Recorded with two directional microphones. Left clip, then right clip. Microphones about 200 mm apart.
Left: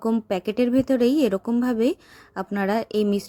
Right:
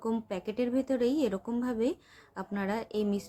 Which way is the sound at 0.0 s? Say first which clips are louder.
Left 9 dB; 40° left (ahead or behind).